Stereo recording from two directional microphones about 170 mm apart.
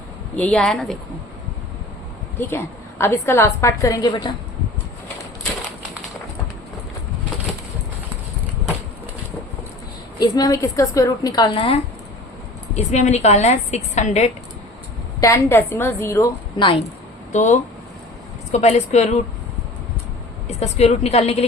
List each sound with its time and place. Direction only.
0.3 s speech: 5° left (ahead or behind)
3.0 s a woman's voice: 15° left (ahead or behind)
10.2 s a woman's voice: 20° left (ahead or behind); by 14.3 s 40° left (ahead or behind)
15.2 s a woman's voice: 15° left (ahead or behind)
16.6 s a woman's voice: 25° left (ahead or behind)
17.3 s a woman's voice: 45° left (ahead or behind)
20.5 s a woman's voice: 40° left (ahead or behind)